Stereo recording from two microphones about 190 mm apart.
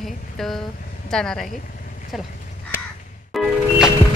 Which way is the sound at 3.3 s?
Centre (ahead or behind).